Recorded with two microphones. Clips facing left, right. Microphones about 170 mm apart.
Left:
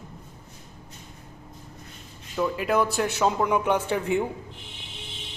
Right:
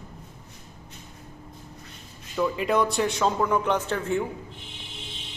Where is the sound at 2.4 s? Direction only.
5° left (ahead or behind).